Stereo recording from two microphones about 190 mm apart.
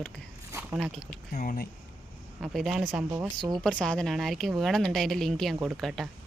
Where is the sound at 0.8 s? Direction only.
Centre (ahead or behind).